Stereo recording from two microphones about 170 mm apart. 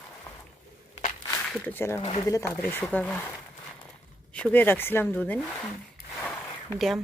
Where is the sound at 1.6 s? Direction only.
15° left (ahead or behind).